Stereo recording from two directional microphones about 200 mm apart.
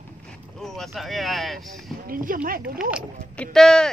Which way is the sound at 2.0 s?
45° right (ahead or behind).